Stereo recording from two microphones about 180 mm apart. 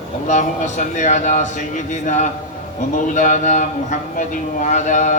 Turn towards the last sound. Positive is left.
turn(degrees=40)  # may be behind; listen again after turning